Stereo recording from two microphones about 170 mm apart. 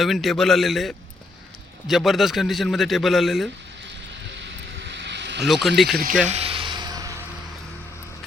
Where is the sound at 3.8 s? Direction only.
90° right.